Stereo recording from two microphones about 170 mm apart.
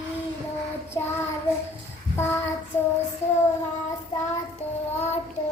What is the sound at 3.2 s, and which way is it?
Child singing, 40° left (ahead or behind).